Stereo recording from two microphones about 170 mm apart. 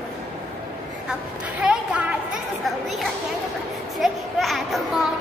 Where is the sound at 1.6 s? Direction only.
5° right (ahead or behind).